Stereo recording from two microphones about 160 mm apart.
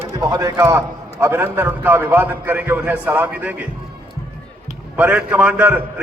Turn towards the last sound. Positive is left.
turn(degrees=-10)  # may be behind; listen again after turning